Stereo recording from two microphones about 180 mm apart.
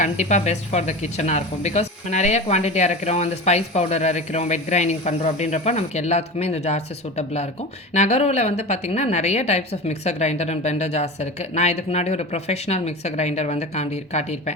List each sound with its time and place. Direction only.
0.0 s speech: 40° left (ahead or behind)